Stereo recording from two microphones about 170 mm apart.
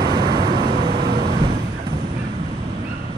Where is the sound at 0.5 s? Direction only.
65° right (ahead or behind).